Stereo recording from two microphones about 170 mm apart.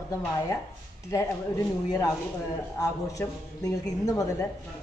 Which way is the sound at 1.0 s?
20° left (ahead or behind).